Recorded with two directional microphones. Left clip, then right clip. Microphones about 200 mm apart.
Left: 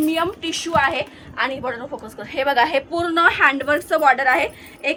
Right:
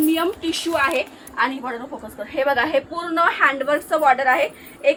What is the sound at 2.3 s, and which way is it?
A woman's voice, 55° left (ahead or behind).